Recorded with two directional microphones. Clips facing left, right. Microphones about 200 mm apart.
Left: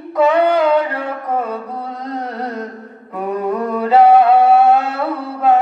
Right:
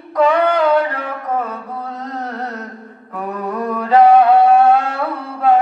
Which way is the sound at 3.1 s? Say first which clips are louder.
Left 4 dB; 10° left (ahead or behind).